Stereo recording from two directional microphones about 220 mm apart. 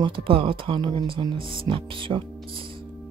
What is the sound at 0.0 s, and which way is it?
Speech, 25° right (ahead or behind).